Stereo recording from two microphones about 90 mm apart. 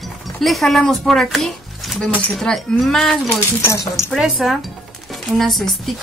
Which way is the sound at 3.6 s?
35° left (ahead or behind).